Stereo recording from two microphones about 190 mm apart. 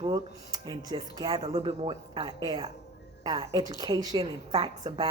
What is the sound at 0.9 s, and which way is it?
A woman's voice, 25° right (ahead or behind).